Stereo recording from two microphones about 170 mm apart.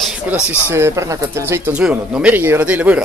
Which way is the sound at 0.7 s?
15° right (ahead or behind).